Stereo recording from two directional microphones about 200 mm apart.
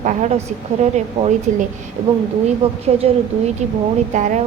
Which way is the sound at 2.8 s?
30° right (ahead or behind).